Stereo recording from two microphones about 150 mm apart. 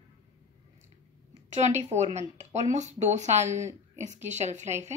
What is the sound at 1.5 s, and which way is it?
A woman's voice, 50° right (ahead or behind).